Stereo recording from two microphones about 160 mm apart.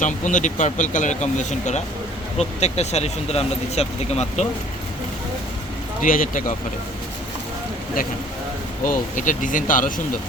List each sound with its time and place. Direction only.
0.0 s speech: 50° left (ahead or behind)
6.0 s speech: 60° left (ahead or behind)
8.9 s speech: 55° left (ahead or behind)